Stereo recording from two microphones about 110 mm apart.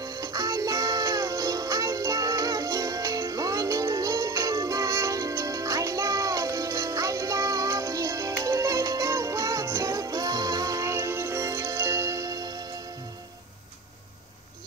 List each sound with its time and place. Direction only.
0.0 s music: 35° right (ahead or behind)